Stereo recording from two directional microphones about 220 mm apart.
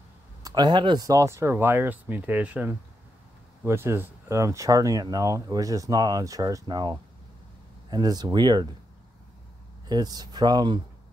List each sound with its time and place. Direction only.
0.4 s speech: 15° right (ahead or behind)
9.8 s speech: 20° right (ahead or behind)